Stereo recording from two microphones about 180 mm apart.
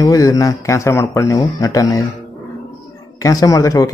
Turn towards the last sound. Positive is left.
turn(degrees=20)  # may be behind; listen again after turning